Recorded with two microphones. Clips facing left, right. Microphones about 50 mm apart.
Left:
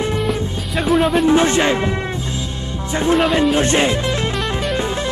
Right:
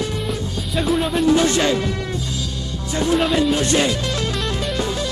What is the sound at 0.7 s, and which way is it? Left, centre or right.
Speech, centre.